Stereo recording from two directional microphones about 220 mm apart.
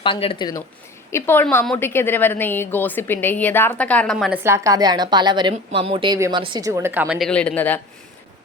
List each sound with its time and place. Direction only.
0.0 s a woman's voice: 25° left (ahead or behind); by 4.4 s centre (ahead or behind)
4.4 s a woman's voice: 15° right (ahead or behind); by 7.8 s 5° left (ahead or behind)